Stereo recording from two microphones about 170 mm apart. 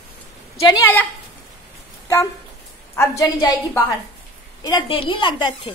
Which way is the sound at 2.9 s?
15° left (ahead or behind).